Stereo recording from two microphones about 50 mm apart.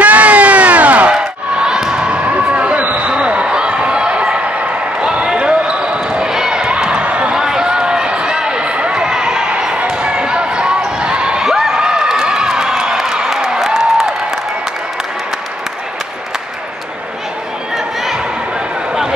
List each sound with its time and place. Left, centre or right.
0.0 s crowd: right
1.1 s crowd: centre
2.0 s basketball bounce: right
3.1 s basketball bounce: right
6.7 s a sound: centre
7.3 s a sound: centre